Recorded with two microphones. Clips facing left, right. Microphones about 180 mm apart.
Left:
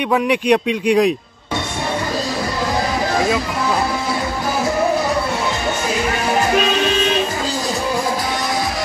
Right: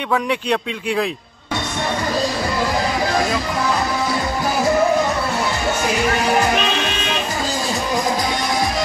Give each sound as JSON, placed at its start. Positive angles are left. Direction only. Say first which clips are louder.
{"t": 0.1, "sound": "a man's voice", "louder": "left 4 dB", "side_deg": 15}